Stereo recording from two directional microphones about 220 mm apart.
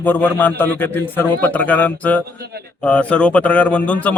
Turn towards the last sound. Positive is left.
turn(degrees=5)  # may be behind; listen again after turning